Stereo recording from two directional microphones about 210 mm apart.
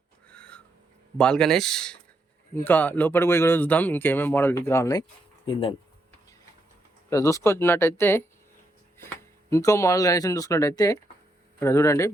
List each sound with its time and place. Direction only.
0.3 s a sound: 5° left (ahead or behind)
1.2 s a man's voice: 5° left (ahead or behind)
5.5 s speech: 25° left (ahead or behind)
7.1 s a man's voice: 15° left (ahead or behind)